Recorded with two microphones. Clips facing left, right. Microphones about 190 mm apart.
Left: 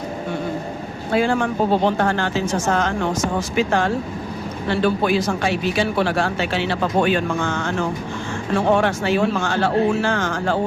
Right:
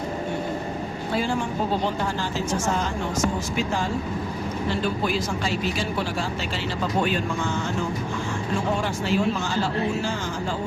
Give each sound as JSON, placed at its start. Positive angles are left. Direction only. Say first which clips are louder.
{"t": 1.1, "sound": "speech", "louder": "left 7 dB", "side_deg": 60}